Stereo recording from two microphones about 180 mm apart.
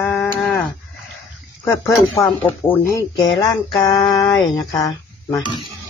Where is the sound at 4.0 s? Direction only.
Centre (ahead or behind).